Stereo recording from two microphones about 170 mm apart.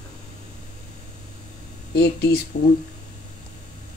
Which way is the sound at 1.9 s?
70° left (ahead or behind).